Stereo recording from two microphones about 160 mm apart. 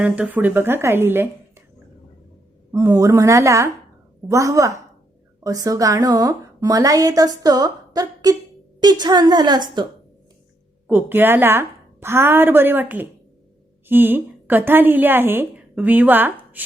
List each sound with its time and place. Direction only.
0.0 s a woman's voice: 10° right (ahead or behind)
2.7 s a woman's voice: 20° right (ahead or behind)
10.8 s a woman's voice: 10° right (ahead or behind)